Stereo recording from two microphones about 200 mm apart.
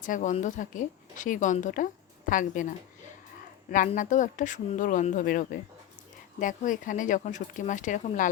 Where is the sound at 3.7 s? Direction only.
40° left (ahead or behind).